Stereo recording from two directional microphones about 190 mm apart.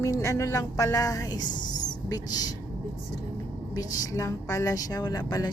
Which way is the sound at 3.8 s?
15° left (ahead or behind).